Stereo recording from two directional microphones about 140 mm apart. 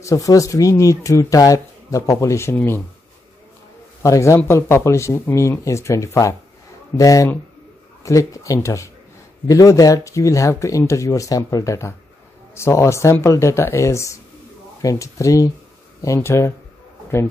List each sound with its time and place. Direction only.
0.0 s speech: 25° left (ahead or behind)
4.0 s speech: 20° left (ahead or behind)